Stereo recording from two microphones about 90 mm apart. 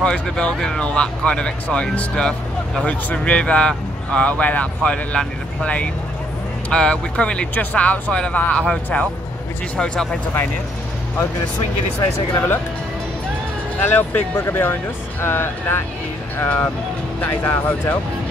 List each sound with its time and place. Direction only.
0.0 s speech: 10° left (ahead or behind)
12.0 s speech: 25° left (ahead or behind)
13.7 s speech: 20° left (ahead or behind)